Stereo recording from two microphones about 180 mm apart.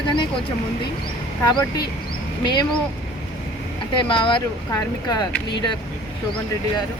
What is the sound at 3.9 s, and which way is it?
Speech, 30° left (ahead or behind).